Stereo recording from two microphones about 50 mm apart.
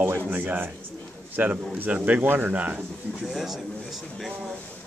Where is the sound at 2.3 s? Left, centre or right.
Right.